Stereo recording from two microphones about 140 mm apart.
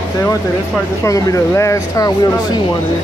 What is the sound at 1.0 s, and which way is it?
Speech, 20° left (ahead or behind).